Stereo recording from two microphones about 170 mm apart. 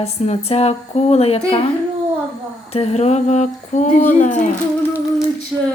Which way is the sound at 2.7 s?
35° left (ahead or behind).